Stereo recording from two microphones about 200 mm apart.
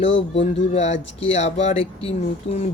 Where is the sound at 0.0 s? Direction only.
65° left (ahead or behind).